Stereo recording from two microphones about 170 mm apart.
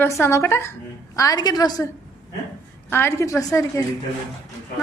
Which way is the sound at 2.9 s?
15° left (ahead or behind).